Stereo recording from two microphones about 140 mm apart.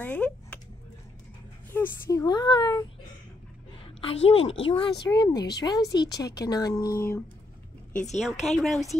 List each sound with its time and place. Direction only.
0.0 s speech: 10° left (ahead or behind)
1.7 s a woman's voice: 20° left (ahead or behind)
3.8 s a woman's voice: 40° left (ahead or behind); by 7.2 s 15° left (ahead or behind)
7.9 s speech: 60° left (ahead or behind)
8.2 s speech: centre (ahead or behind)